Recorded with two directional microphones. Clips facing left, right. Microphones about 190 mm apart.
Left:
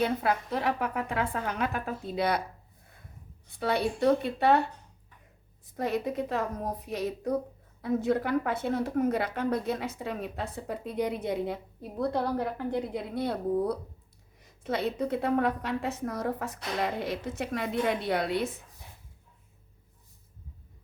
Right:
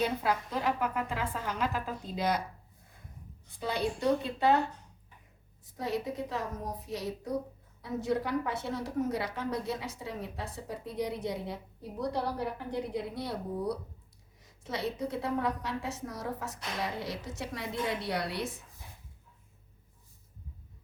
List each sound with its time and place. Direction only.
0.0 s a woman's voice: 60° left (ahead or behind)
3.6 s a woman's voice: 65° left (ahead or behind)
5.7 s a woman's voice: 55° left (ahead or behind)